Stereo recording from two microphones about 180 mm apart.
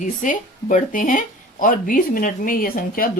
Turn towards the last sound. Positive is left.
turn(degrees=55)  # may be behind; listen again after turning